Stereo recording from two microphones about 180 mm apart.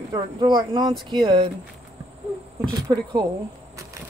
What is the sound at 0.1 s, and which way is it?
Speech, 25° right (ahead or behind).